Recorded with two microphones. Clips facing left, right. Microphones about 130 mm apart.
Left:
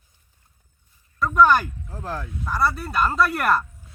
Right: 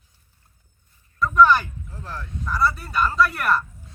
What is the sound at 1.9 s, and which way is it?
Speech, 50° left (ahead or behind).